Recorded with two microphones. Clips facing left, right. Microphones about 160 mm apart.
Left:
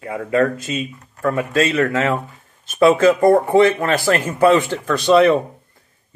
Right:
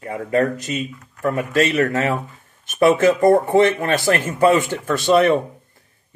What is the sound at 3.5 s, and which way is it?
Speech, 20° right (ahead or behind).